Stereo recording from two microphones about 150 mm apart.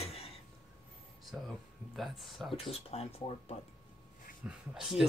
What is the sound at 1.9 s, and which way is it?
Speech, centre (ahead or behind).